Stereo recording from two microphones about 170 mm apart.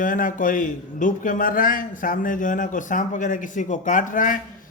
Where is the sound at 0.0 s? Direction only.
50° left (ahead or behind).